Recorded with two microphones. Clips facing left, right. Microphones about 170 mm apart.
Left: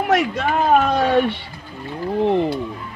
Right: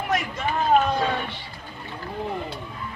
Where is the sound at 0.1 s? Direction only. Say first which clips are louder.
Left 7 dB; 70° left (ahead or behind).